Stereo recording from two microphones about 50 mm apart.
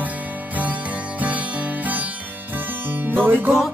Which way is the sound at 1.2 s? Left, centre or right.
Right.